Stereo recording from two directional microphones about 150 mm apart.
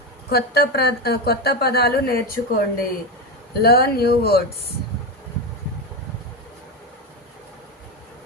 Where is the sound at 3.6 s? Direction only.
90° left.